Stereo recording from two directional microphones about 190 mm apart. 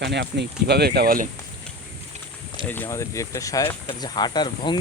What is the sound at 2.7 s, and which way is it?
Speech, 15° left (ahead or behind).